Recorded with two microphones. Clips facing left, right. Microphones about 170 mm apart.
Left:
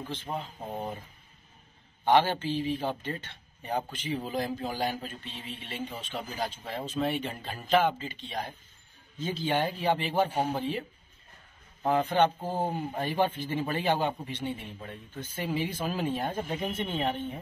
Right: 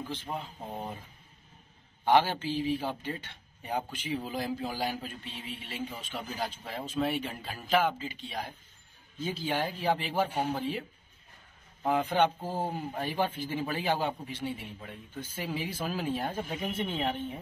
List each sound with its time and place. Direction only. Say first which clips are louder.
0.3 s speech: left 2 dB; 5° left (ahead or behind)
2.0 s a man's voice: left 1 dB; 5° right (ahead or behind)
10.2 s speech: left 2 dB; 10° left (ahead or behind)
11.8 s speech: left 2 dB; 5° right (ahead or behind)
12.4 s speech: left 3 dB; 20° left (ahead or behind)
12.7 s a man's voice: left 3 dB; centre (ahead or behind)